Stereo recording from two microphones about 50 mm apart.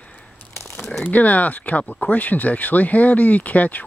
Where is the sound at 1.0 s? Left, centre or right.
Left.